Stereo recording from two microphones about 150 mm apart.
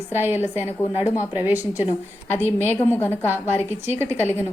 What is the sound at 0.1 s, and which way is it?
Speech, 15° right (ahead or behind).